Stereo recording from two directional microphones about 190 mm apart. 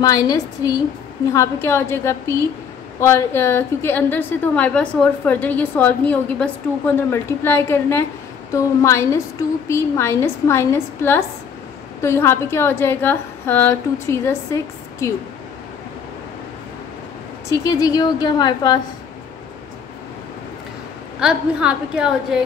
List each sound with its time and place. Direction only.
0.0 s a woman's voice: 20° left (ahead or behind)
17.5 s a woman's voice: 20° left (ahead or behind)
21.2 s a woman's voice: 5° right (ahead or behind)